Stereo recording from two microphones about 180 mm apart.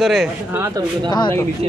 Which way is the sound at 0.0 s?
Centre (ahead or behind).